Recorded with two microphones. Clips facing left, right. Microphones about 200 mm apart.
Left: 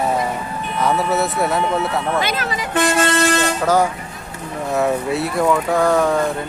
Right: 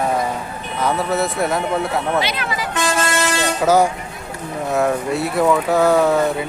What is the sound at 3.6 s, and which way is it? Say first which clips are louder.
Speech: right 5 dB; 10° right (ahead or behind).